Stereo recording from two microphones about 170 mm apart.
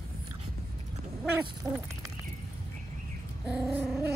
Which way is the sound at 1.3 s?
10° right (ahead or behind).